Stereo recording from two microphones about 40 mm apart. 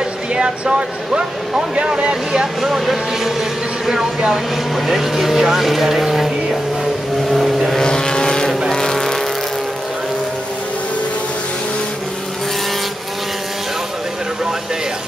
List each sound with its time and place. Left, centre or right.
0.3 s speech: right
2.6 s speech: centre
7.2 s vehicle: centre
7.8 s vehicle: centre